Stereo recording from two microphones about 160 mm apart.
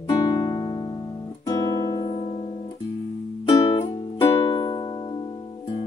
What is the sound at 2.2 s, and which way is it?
Guitar, 40° left (ahead or behind).